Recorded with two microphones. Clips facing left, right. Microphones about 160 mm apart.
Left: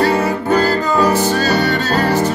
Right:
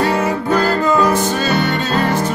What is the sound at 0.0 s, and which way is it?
Music, 35° left (ahead or behind).